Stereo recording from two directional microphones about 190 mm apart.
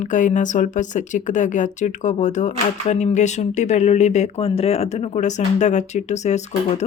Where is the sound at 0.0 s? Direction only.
40° left (ahead or behind).